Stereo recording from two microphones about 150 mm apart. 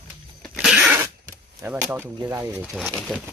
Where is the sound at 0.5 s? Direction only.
5° right (ahead or behind).